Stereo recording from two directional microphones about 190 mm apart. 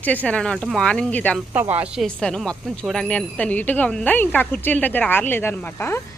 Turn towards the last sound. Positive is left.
turn(degrees=10)  # may be behind; listen again after turning